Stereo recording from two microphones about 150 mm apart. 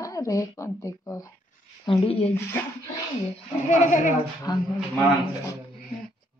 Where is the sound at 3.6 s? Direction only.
55° left (ahead or behind).